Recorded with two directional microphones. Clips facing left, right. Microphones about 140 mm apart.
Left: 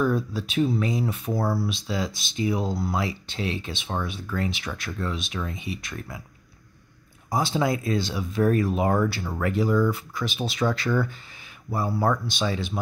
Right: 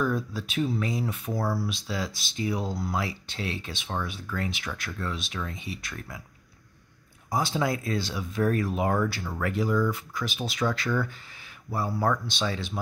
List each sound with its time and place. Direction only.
0.0 s speech: 30° left (ahead or behind)
7.2 s speech: 30° left (ahead or behind)
11.7 s speech: 15° left (ahead or behind)